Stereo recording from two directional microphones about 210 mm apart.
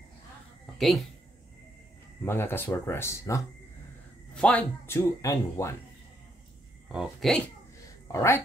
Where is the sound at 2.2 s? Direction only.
10° left (ahead or behind).